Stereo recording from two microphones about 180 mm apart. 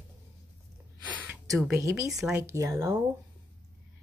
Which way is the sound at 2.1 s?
5° right (ahead or behind).